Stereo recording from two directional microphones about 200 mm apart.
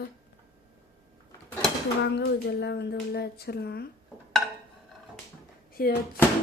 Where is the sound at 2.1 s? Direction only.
60° left (ahead or behind).